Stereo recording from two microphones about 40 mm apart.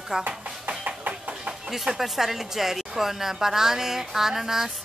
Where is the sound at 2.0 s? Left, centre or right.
Centre.